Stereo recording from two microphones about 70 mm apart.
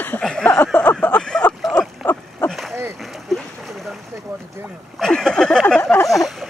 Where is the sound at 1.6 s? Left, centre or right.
Centre.